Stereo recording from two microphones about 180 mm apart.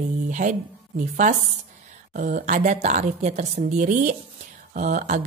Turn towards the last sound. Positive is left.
turn(degrees=-40)  # may be behind; listen again after turning